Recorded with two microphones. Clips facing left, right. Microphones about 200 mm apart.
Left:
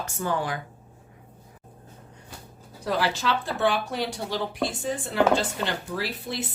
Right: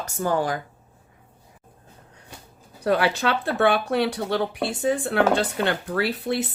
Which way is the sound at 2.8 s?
60° right (ahead or behind).